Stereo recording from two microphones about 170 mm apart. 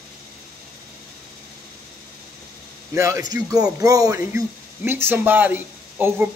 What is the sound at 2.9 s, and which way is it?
A man's voice, 20° right (ahead or behind).